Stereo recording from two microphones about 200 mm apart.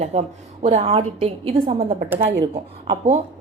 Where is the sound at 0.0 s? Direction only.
35° right (ahead or behind).